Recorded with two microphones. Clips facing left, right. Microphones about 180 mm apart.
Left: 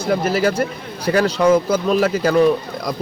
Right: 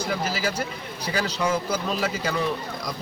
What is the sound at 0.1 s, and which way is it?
Speech, 60° left (ahead or behind).